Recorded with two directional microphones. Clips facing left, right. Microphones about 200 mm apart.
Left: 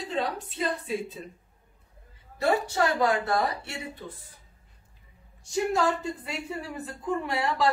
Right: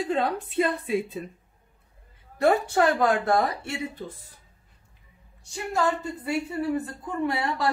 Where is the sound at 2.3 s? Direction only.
55° right (ahead or behind).